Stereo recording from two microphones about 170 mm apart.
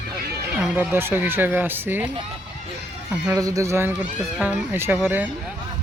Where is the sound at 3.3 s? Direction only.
20° right (ahead or behind).